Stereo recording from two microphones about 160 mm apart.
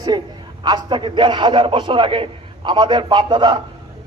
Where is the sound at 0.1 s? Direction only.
30° right (ahead or behind).